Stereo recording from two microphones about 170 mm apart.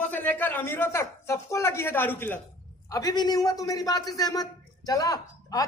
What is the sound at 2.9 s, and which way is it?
A man's voice, 20° left (ahead or behind).